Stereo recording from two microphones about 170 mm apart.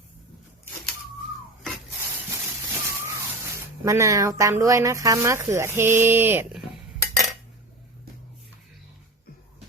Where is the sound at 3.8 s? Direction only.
20° right (ahead or behind).